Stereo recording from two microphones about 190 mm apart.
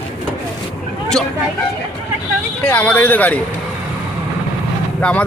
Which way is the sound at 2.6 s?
5° left (ahead or behind).